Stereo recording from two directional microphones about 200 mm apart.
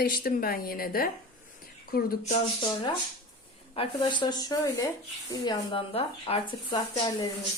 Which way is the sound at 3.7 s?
30° left (ahead or behind).